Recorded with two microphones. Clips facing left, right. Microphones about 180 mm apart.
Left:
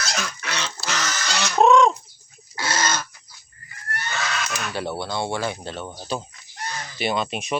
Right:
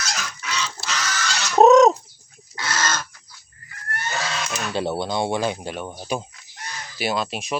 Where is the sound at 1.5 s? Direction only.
40° right (ahead or behind).